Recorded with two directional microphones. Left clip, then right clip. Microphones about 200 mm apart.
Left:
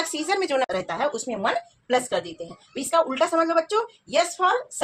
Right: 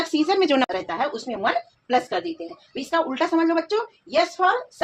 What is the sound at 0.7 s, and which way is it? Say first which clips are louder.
A woman's voice: even; 40° right (ahead or behind).